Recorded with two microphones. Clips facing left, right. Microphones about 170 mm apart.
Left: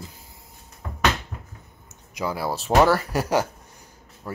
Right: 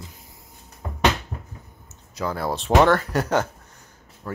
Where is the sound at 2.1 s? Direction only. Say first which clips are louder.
Right 1 dB; 10° left (ahead or behind).